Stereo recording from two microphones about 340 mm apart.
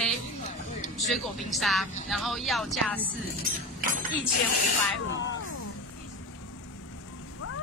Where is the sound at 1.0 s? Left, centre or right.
Centre.